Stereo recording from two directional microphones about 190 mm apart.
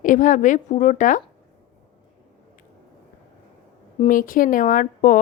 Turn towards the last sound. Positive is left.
turn(degrees=45)  # may be behind; listen again after turning